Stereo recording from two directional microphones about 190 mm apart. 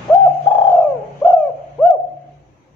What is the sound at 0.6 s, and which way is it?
Bird, 10° left (ahead or behind).